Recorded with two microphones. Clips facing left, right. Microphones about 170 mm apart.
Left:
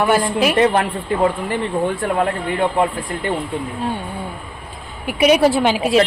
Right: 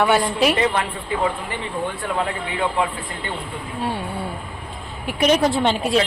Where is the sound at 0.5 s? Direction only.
45° left (ahead or behind).